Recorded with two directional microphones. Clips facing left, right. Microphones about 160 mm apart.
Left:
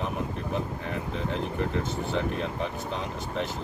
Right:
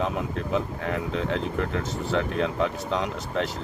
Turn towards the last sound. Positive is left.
turn(degrees=-90)